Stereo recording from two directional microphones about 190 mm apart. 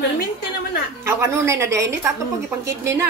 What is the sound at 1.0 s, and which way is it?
A woman's voice, 15° right (ahead or behind).